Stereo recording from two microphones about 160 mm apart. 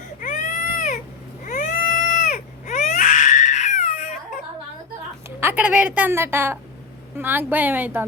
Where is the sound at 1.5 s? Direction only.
50° left (ahead or behind).